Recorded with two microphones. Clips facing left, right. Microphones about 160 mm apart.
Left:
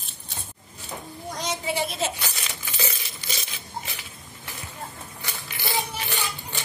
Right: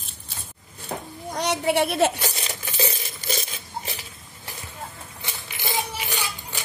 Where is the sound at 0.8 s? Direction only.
60° right (ahead or behind).